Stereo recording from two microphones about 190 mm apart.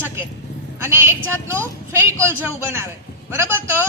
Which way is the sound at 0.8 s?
15° right (ahead or behind).